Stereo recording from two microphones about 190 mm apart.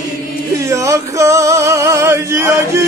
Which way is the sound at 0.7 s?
15° right (ahead or behind).